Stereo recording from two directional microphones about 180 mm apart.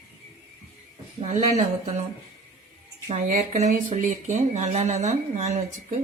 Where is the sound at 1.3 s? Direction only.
35° right (ahead or behind).